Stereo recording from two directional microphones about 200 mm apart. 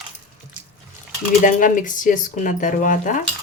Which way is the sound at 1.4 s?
40° left (ahead or behind).